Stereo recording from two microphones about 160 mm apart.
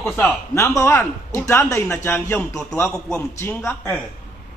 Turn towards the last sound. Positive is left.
turn(degrees=15)  # may be behind; listen again after turning